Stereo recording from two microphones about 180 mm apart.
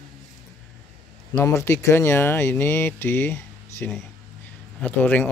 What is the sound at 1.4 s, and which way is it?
Speech, 15° left (ahead or behind).